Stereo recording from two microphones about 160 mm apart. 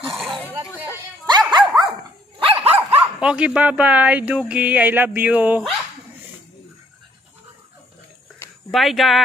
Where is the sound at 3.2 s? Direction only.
5° right (ahead or behind).